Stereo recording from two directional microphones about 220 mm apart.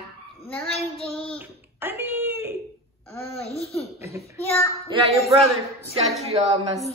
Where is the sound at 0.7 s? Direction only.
25° left (ahead or behind).